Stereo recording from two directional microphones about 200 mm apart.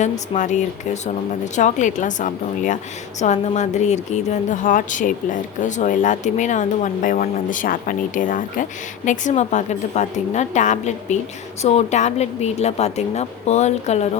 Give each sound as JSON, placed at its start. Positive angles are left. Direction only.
{"t": 0.0, "sound": "a woman's voice", "side_deg": 35}